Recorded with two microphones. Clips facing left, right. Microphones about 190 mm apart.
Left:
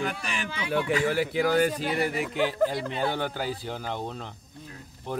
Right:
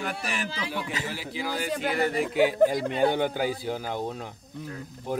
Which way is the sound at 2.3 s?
10° right (ahead or behind).